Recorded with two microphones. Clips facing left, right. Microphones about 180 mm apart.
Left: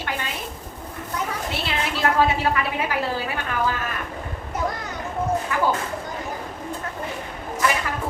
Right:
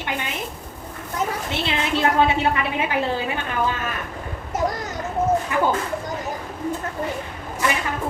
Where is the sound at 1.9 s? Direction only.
25° right (ahead or behind).